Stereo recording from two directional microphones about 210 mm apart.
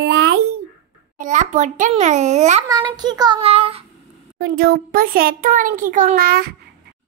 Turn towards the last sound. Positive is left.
turn(degrees=-45)  # may be behind; listen again after turning